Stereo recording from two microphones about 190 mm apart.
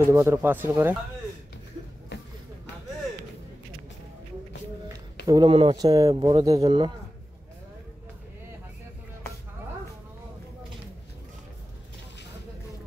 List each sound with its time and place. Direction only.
0.0 s speech: 15° right (ahead or behind)
5.2 s speech: 20° right (ahead or behind)